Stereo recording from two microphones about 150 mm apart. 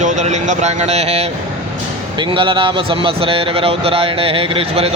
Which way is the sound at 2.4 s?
35° right (ahead or behind).